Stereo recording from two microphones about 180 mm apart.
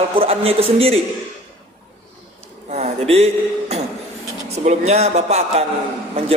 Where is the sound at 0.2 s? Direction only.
35° right (ahead or behind).